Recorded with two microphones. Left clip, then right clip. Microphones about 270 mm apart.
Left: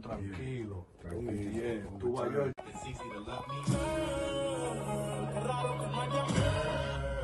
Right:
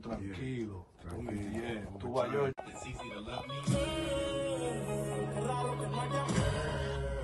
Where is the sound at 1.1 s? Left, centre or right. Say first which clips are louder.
Left 3 dB; centre.